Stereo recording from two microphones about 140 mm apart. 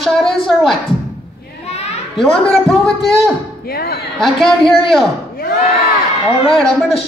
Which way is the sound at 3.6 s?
90° left.